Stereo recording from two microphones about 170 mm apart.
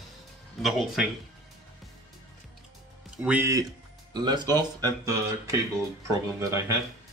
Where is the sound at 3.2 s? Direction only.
10° right (ahead or behind).